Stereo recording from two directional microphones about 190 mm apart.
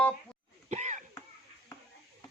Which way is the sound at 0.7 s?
40° right (ahead or behind).